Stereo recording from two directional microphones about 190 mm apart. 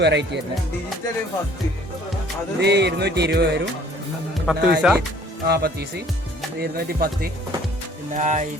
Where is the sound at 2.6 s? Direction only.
60° right (ahead or behind).